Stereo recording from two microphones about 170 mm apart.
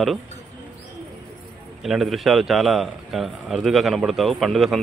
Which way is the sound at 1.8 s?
Centre (ahead or behind).